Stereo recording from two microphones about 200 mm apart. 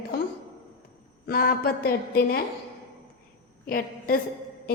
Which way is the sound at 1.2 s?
50° left (ahead or behind).